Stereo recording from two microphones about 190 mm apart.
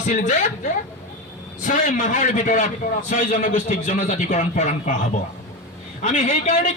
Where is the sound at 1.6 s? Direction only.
40° left (ahead or behind).